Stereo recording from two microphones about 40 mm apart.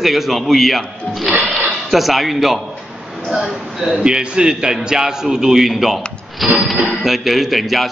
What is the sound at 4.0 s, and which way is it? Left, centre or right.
A man's voice, right.